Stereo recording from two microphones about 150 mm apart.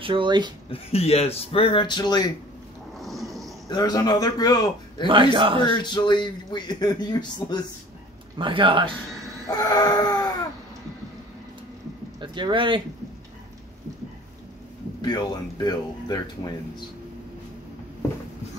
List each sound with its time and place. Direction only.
0.0 s a man's voice: 35° right (ahead or behind)
0.7 s speech: 40° left (ahead or behind)
3.0 s a sound: centre (ahead or behind)
3.6 s a man's voice: 25° left (ahead or behind)
5.0 s a man's voice: 35° right (ahead or behind)
5.6 s a man's voice: 30° left (ahead or behind)
8.4 s a man's voice: 35° right (ahead or behind)
9.5 s a man's voice: 25° left (ahead or behind)
12.2 s speech: 30° right (ahead or behind)
15.0 s a man's voice: 30° left (ahead or behind)